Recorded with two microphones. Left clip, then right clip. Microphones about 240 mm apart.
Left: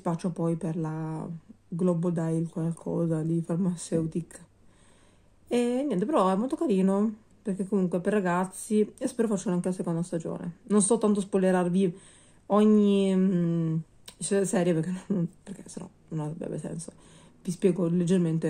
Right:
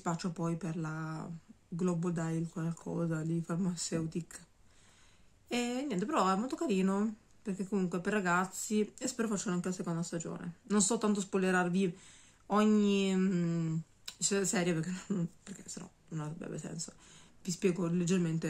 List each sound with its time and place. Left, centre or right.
0.0 s speech: centre
2.7 s speech: centre
3.0 s speech: centre
5.5 s speech: centre
16.8 s a sound: right
17.6 s speech: centre